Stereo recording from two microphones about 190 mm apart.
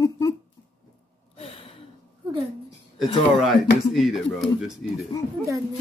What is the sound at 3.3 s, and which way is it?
Speech, centre (ahead or behind).